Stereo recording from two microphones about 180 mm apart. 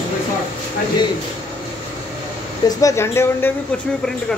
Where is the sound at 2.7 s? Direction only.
20° left (ahead or behind).